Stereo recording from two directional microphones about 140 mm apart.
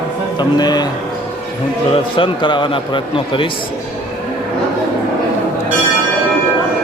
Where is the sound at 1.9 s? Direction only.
35° left (ahead or behind).